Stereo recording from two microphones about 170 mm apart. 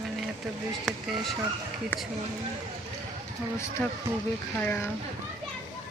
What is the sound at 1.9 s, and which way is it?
Speech, 10° left (ahead or behind).